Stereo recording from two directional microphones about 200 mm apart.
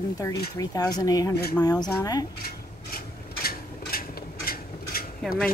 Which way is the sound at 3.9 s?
45° left (ahead or behind).